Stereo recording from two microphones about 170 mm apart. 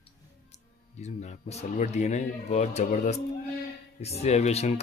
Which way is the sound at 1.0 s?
40° left (ahead or behind).